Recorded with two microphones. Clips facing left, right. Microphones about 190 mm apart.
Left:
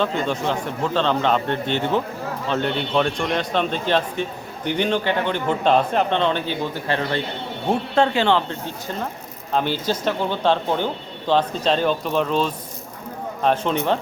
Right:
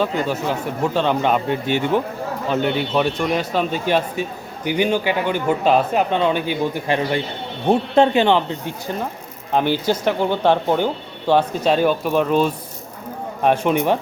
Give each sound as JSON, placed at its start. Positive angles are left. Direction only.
{"t": 0.0, "sound": "a man's voice", "side_deg": -5}